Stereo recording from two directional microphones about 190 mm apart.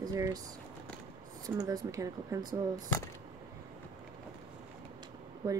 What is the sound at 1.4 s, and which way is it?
Speech, 20° right (ahead or behind).